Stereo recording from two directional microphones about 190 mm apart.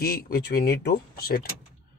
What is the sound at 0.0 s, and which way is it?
Speech, 50° left (ahead or behind).